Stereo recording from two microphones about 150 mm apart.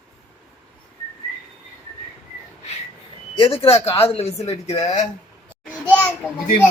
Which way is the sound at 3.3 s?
40° left (ahead or behind).